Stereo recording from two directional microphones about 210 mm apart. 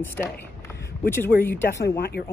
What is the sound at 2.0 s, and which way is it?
Speech, 50° left (ahead or behind).